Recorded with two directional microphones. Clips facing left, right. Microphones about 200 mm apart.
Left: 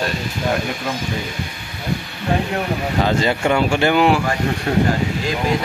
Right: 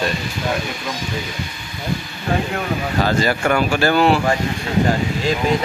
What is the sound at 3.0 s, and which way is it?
Speech, 20° left (ahead or behind).